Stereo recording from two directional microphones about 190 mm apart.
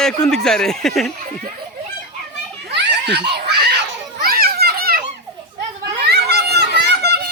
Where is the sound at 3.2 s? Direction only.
60° right (ahead or behind).